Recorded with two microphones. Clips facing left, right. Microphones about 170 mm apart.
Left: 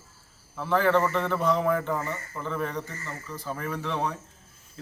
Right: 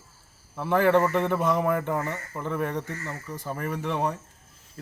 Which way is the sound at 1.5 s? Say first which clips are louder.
Even; 50° right (ahead or behind).